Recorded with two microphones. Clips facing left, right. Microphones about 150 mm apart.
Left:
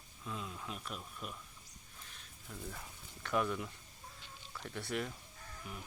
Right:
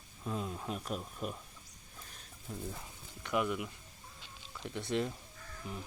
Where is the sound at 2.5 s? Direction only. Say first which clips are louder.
Right 4 dB; 20° right (ahead or behind).